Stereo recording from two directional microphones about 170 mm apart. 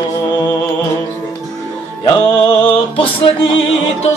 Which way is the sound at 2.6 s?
30° left (ahead or behind).